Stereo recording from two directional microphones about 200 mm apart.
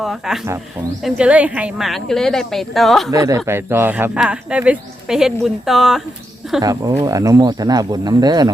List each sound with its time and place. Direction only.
0.0 s a woman's voice: centre (ahead or behind)
3.1 s speech: 15° right (ahead or behind); by 6.0 s centre (ahead or behind)
6.6 s speech: 20° right (ahead or behind)